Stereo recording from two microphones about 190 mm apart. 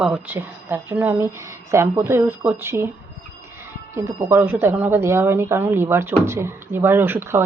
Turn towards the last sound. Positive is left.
turn(degrees=-10)  # may be behind; listen again after turning